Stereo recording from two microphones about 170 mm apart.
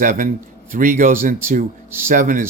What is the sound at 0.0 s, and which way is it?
Speech, 50° right (ahead or behind).